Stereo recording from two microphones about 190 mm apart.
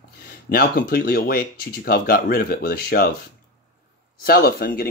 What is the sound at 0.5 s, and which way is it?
Speech, 50° left (ahead or behind).